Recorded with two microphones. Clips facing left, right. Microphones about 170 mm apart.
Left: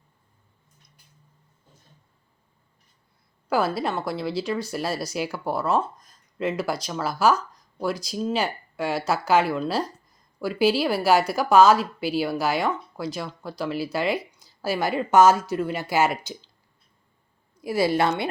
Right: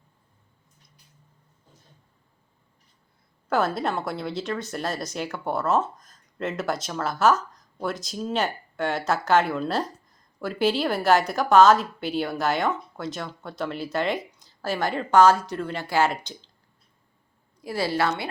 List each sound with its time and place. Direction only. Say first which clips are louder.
3.5 s a woman's voice: even; centre (ahead or behind)
17.6 s a woman's voice: left 3 dB; 15° left (ahead or behind)